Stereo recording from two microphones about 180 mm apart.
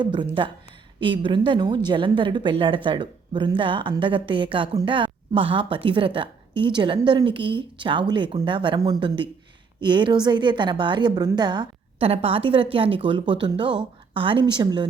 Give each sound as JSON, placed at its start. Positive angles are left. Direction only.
{"t": 0.0, "sound": "a woman's voice", "side_deg": -25}